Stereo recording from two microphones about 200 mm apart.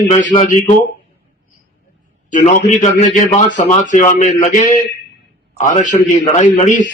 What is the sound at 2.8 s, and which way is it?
A man's voice, 35° left (ahead or behind).